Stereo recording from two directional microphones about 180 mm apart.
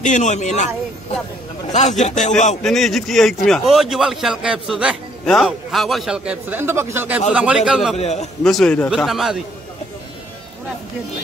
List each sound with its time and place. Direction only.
0.0 s a man's voice: 40° left (ahead or behind)
1.7 s a man's voice: 40° left (ahead or behind)
2.6 s a man's voice: centre (ahead or behind)
8.0 s a man's voice: 40° left (ahead or behind)
8.5 s a man's voice: 5° left (ahead or behind)